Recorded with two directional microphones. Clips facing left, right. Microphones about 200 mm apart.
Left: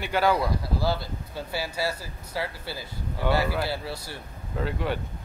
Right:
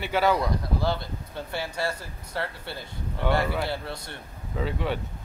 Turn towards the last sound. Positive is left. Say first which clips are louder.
# even
turn(degrees=0)  # may be behind; listen again after turning